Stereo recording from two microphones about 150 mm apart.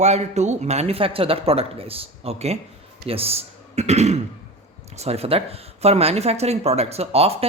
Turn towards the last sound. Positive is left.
turn(degrees=-40)  # may be behind; listen again after turning